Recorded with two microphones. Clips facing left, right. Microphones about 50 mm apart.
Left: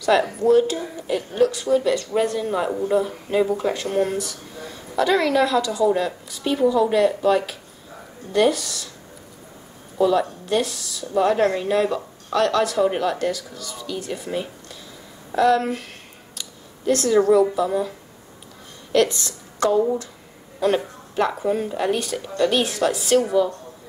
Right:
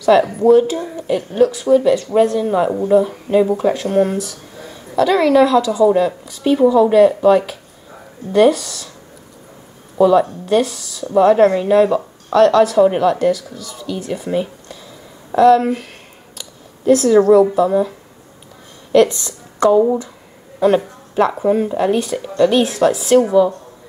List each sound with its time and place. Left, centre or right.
0.0 s speech: centre
9.9 s a woman's voice: centre